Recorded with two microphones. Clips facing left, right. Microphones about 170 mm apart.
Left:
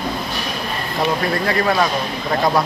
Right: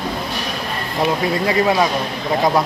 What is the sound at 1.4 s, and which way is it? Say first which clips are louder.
Speech: right 3 dB; 15° right (ahead or behind).